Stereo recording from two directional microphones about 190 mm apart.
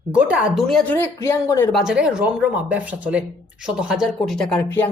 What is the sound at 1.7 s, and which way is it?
Speech, 5° right (ahead or behind).